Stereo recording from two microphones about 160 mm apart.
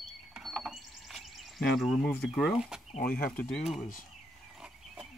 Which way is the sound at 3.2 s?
65° left (ahead or behind).